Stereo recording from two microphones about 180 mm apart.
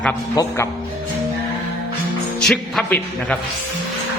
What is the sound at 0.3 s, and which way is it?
Speech, 15° left (ahead or behind).